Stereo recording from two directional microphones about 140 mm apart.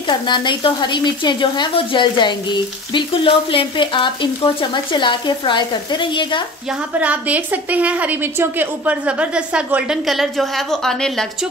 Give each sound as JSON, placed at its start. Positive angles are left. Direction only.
{"t": 0.3, "sound": "speech", "side_deg": 35}
{"t": 7.0, "sound": "a woman's voice", "side_deg": -10}